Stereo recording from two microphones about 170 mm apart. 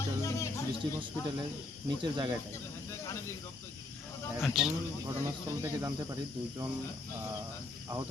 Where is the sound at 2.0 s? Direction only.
30° right (ahead or behind).